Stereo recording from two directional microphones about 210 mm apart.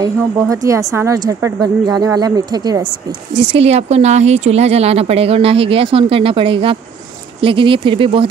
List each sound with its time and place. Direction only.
0.0 s a woman's voice: 15° right (ahead or behind)